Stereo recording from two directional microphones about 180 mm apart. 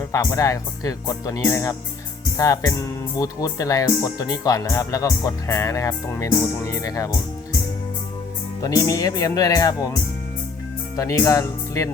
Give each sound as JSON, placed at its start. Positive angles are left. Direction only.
{"t": 0.1, "sound": "speech", "side_deg": 15}
{"t": 8.6, "sound": "speech", "side_deg": 20}
{"t": 10.9, "sound": "speech", "side_deg": 15}